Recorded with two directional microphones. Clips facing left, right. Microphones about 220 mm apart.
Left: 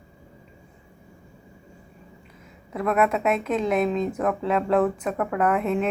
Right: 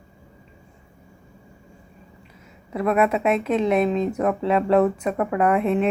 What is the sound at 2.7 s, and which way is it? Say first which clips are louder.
A woman's voice: right 2 dB; 5° right (ahead or behind).